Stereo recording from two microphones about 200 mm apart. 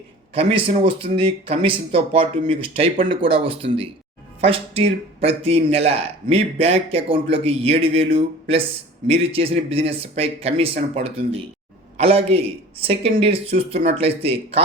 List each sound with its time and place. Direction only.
0.3 s a man's voice: 25° right (ahead or behind)